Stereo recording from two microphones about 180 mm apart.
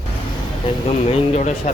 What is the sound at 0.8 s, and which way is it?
Speech, 35° left (ahead or behind).